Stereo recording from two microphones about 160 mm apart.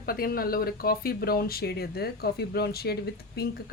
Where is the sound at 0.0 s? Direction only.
65° left (ahead or behind).